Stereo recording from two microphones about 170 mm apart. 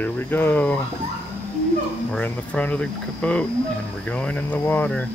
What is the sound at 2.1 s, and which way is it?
Speech, 10° left (ahead or behind).